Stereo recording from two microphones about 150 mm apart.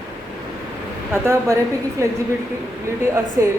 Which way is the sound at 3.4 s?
20° right (ahead or behind).